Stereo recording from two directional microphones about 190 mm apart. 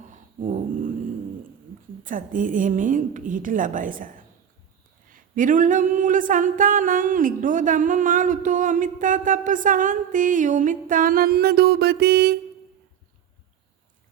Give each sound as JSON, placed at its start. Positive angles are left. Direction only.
{"t": 0.0, "sound": "dog", "side_deg": -40}
{"t": 2.0, "sound": "singing", "side_deg": -45}